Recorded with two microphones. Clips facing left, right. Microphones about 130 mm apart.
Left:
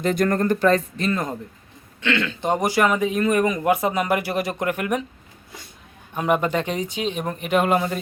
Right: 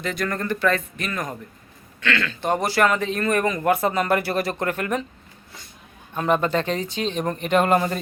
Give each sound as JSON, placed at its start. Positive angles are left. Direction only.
{"t": 0.0, "sound": "speech", "side_deg": 45}
{"t": 6.1, "sound": "speech", "side_deg": 15}